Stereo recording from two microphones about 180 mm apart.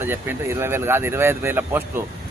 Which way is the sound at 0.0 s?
10° right (ahead or behind).